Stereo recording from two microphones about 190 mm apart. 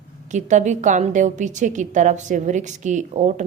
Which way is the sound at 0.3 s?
40° right (ahead or behind).